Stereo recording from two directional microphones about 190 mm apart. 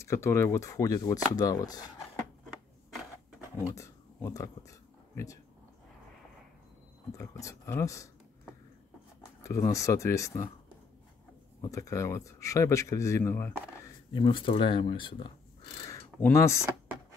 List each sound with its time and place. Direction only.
0.0 s speech: 15° left (ahead or behind)
3.7 s a sound: 15° left (ahead or behind)
7.1 s speech: 15° left (ahead or behind)
9.2 s speech: 15° left (ahead or behind)
11.6 s speech: 15° left (ahead or behind)
14.1 s speech: 25° left (ahead or behind)
15.9 s a sound: 15° left (ahead or behind)